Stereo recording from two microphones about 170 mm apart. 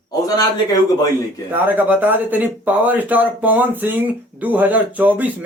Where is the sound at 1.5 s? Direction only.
10° right (ahead or behind).